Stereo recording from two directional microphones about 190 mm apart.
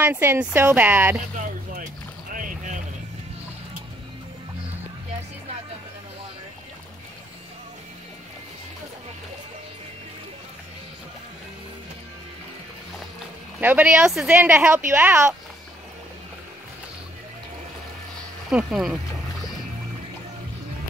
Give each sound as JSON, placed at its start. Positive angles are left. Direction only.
{"t": 0.0, "sound": "a woman's voice", "side_deg": -10}
{"t": 1.3, "sound": "a sound", "side_deg": -45}
{"t": 2.3, "sound": "boat", "side_deg": -45}
{"t": 13.6, "sound": "a woman's voice", "side_deg": -10}
{"t": 18.5, "sound": "speech", "side_deg": -5}